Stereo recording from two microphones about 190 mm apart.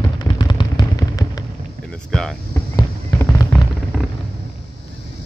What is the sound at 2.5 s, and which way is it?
Fireworks, 15° left (ahead or behind).